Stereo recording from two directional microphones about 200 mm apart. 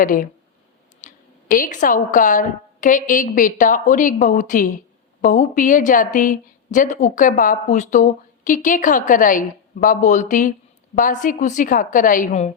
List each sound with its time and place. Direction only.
0.0 s a woman's voice: 40° left (ahead or behind)